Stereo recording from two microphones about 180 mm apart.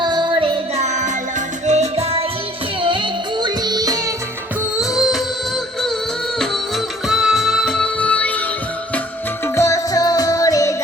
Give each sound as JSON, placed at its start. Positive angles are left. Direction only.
{"t": 0.0, "sound": "music", "side_deg": -25}
{"t": 4.8, "sound": "music", "side_deg": 0}
{"t": 7.1, "sound": "music", "side_deg": -5}
{"t": 9.6, "sound": "music", "side_deg": 15}